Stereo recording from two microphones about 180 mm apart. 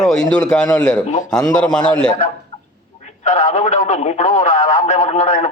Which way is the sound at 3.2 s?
40° left (ahead or behind).